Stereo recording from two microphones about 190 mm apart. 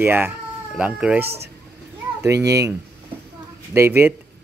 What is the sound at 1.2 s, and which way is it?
Speech, 60° right (ahead or behind).